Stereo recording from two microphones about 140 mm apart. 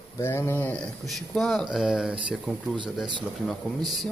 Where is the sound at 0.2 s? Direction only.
15° left (ahead or behind).